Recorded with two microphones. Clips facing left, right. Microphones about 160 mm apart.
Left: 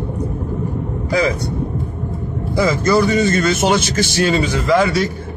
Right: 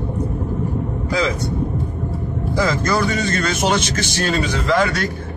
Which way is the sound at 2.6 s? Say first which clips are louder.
Left 5 dB; 5° left (ahead or behind).